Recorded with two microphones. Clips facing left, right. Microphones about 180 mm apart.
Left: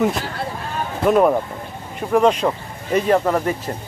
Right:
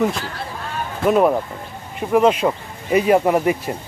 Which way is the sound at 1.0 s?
Centre (ahead or behind).